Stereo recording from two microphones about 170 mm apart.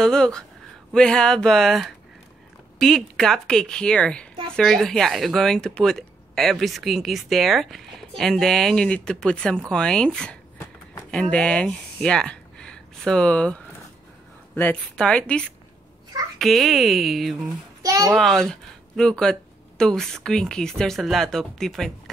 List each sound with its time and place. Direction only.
0.0 s a woman's voice: 5° left (ahead or behind)
17.5 s a child's voice: 20° right (ahead or behind)
18.1 s speech: centre (ahead or behind)